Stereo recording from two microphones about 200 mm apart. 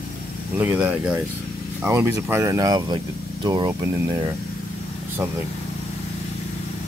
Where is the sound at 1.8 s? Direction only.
10° right (ahead or behind).